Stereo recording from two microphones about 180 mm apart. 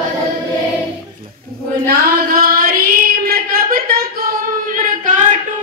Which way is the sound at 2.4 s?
50° right (ahead or behind).